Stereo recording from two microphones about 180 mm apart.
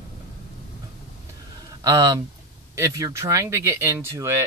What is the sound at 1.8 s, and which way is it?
Speech, 20° right (ahead or behind).